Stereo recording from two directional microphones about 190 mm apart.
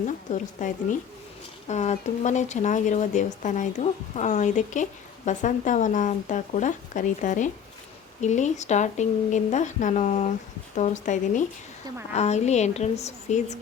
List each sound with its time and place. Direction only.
0.1 s speech: 40° left (ahead or behind)